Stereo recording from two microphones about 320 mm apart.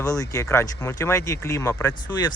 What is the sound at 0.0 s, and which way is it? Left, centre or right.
Speech, centre.